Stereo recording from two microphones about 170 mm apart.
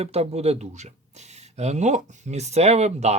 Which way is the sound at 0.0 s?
40° right (ahead or behind).